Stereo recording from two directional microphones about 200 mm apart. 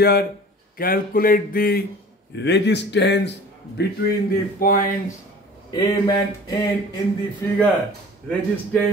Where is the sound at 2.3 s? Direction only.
60° left (ahead or behind).